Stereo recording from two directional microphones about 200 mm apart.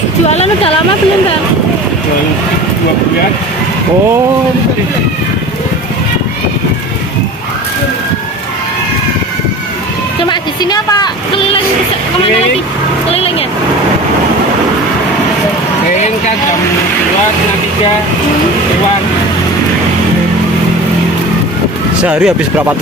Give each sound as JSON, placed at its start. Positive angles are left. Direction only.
{"t": 0.3, "sound": "speech", "side_deg": 30}
{"t": 10.2, "sound": "a sound", "side_deg": 20}
{"t": 13.1, "sound": "vehicle", "side_deg": 30}
{"t": 22.0, "sound": "speech", "side_deg": -5}